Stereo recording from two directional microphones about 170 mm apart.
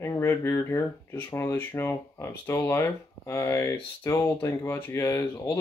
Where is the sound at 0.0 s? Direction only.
15° left (ahead or behind).